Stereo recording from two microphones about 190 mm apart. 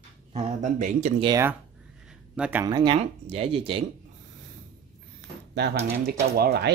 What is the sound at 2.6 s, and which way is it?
Speech, 20° right (ahead or behind).